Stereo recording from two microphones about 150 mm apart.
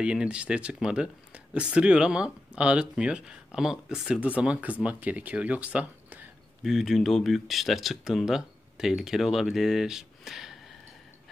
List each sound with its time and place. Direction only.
0.0 s speech: 5° right (ahead or behind)